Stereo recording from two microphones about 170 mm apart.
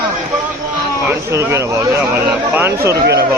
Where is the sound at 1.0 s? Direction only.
15° right (ahead or behind).